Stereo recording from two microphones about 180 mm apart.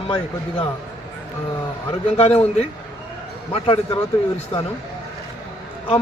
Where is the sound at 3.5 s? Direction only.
30° left (ahead or behind).